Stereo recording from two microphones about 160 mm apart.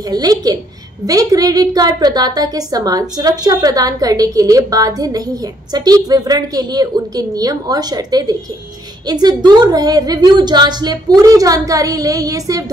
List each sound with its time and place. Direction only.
0.0 s a woman's voice: 25° right (ahead or behind)